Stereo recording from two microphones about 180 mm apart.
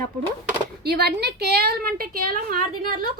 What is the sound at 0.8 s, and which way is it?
Speech, 60° right (ahead or behind).